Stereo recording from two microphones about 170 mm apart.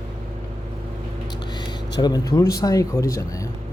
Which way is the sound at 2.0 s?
20° left (ahead or behind).